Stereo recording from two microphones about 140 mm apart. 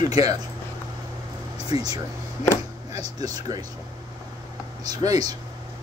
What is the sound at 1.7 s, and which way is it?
Speech, 30° right (ahead or behind).